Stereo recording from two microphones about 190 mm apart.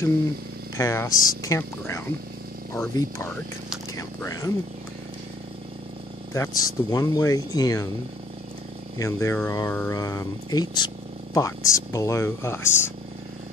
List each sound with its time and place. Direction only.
0.7 s speech: 15° left (ahead or behind)
6.3 s speech: 15° left (ahead or behind)
8.9 s speech: 15° left (ahead or behind)